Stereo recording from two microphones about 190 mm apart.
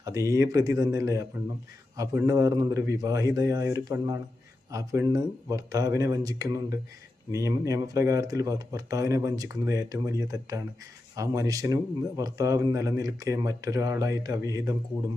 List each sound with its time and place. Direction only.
0.0 s a man's voice: 15° right (ahead or behind)